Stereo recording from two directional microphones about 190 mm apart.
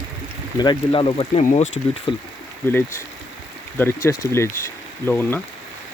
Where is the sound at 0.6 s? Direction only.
25° left (ahead or behind).